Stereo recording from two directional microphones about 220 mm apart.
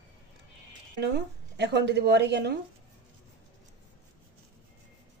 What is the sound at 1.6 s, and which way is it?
Speech, 50° right (ahead or behind).